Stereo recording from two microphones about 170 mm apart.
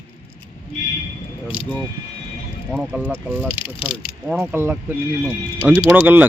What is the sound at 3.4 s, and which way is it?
Speech, 30° left (ahead or behind).